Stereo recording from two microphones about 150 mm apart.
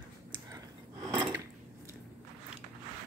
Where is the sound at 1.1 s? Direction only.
20° right (ahead or behind).